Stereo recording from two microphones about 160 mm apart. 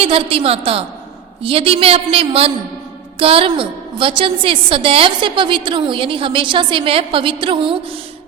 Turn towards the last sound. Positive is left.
turn(degrees=-30)  # may be behind; listen again after turning